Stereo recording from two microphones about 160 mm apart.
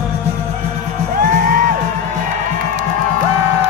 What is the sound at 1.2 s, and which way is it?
Music, 60° right (ahead or behind).